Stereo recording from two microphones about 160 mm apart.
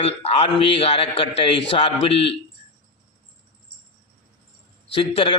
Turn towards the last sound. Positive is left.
turn(degrees=35)  # may be behind; listen again after turning